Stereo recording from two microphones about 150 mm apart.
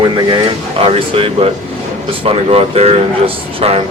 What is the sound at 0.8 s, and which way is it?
Speech, 40° right (ahead or behind).